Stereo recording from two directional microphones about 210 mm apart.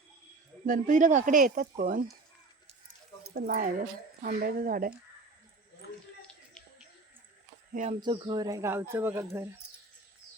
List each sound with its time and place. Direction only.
0.6 s speech: 40° right (ahead or behind)
3.2 s speech: 45° right (ahead or behind)
6.2 s a sound: 5° left (ahead or behind)
7.7 s speech: 35° right (ahead or behind)
8.0 s speech: 20° right (ahead or behind)